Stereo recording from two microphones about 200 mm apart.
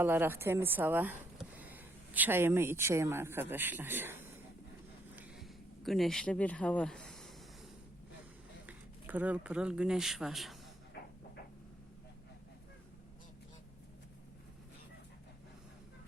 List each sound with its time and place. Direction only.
0.0 s a woman's voice: 10° right (ahead or behind)
5.1 s a sound: 5° right (ahead or behind)
8.6 s speech: 10° right (ahead or behind)